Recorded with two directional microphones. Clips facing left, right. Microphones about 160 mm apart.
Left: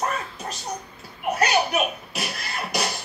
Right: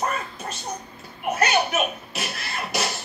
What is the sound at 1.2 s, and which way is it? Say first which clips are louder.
Beatboxing: even; centre (ahead or behind).